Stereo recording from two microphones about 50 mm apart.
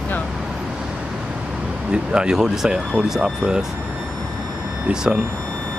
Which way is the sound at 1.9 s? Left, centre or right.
Centre.